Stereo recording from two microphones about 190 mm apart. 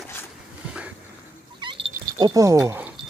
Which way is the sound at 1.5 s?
25° right (ahead or behind).